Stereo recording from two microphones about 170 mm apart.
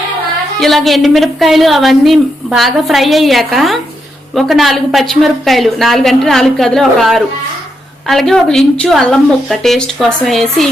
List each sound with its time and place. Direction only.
0.6 s a woman's voice: centre (ahead or behind)